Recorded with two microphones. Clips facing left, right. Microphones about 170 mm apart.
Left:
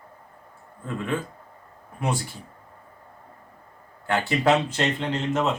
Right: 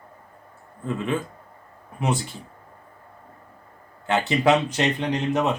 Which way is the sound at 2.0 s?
20° right (ahead or behind).